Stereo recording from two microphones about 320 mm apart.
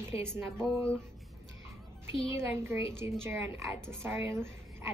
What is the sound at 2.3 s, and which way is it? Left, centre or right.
A woman's voice, centre.